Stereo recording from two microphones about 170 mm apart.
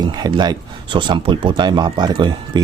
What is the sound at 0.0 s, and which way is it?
Speech, 25° right (ahead or behind).